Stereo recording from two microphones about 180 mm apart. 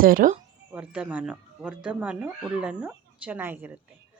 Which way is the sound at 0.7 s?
5° right (ahead or behind).